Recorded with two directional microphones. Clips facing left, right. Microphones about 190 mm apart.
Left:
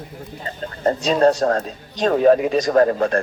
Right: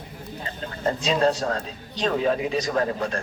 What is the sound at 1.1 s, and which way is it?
A woman's voice, 45° left (ahead or behind).